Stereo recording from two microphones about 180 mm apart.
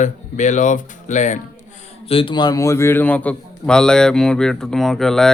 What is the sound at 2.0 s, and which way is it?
A man's voice, 30° left (ahead or behind).